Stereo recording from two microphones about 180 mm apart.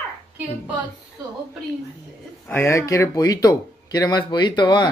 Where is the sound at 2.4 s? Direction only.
15° left (ahead or behind).